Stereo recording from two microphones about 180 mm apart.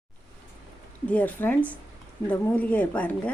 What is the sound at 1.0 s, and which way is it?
A woman's voice, 10° left (ahead or behind).